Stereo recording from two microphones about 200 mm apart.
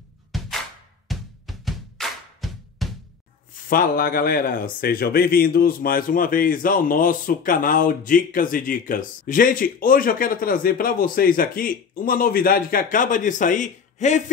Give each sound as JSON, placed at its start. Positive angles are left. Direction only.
{"t": 0.3, "sound": "music", "side_deg": 0}
{"t": 1.0, "sound": "drum", "side_deg": 0}
{"t": 3.6, "sound": "speech", "side_deg": 45}